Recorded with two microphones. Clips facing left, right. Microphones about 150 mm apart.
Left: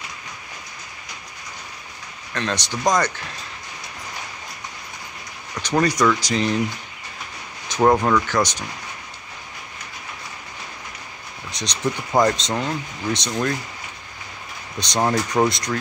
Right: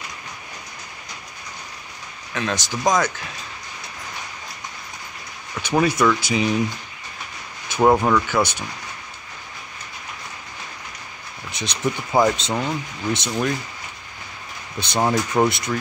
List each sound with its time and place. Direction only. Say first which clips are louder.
2.3 s speech: even; 5° right (ahead or behind)
5.7 s speech: even; 5° right (ahead or behind)
7.8 s speech: even; 5° right (ahead or behind)
11.5 s speech: even; 5° right (ahead or behind)
14.8 s speech: even; 5° right (ahead or behind)